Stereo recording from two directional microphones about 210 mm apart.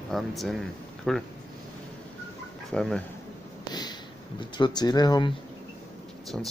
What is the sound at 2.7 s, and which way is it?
Speech, centre (ahead or behind).